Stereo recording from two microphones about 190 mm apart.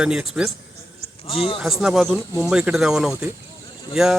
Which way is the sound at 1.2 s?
30° left (ahead or behind).